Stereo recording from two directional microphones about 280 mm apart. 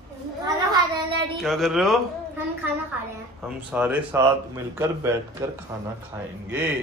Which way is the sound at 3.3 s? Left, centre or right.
Centre.